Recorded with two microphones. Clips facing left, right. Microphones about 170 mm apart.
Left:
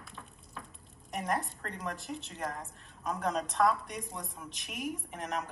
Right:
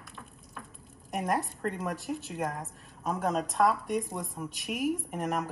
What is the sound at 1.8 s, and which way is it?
A woman's voice, centre (ahead or behind).